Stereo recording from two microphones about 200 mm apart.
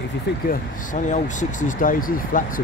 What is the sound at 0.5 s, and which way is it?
Speech, 40° left (ahead or behind).